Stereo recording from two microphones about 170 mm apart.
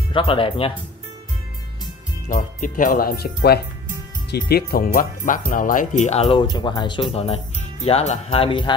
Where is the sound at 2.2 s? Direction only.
50° left (ahead or behind).